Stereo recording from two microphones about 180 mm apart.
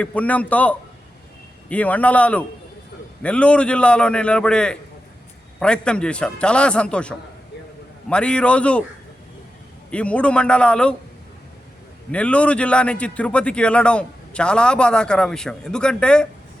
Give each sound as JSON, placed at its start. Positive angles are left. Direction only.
{"t": 0.0, "sound": "a man's voice", "side_deg": 10}
{"t": 9.9, "sound": "a man's voice", "side_deg": 5}
{"t": 12.1, "sound": "a man's voice", "side_deg": 5}